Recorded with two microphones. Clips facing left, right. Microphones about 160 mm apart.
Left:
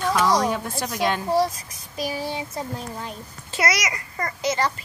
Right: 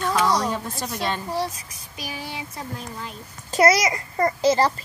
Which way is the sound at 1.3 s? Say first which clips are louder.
Left 6 dB; 40° left (ahead or behind).